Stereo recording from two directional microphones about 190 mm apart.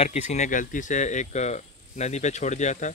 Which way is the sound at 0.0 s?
35° left (ahead or behind).